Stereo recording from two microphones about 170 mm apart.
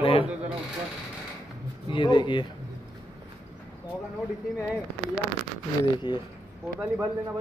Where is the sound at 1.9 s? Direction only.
25° left (ahead or behind).